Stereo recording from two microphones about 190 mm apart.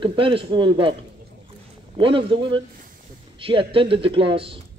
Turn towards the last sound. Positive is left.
turn(degrees=-30)  # may be behind; listen again after turning